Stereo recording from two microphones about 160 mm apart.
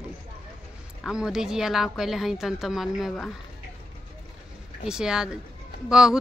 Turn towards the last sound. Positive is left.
turn(degrees=-5)  # may be behind; listen again after turning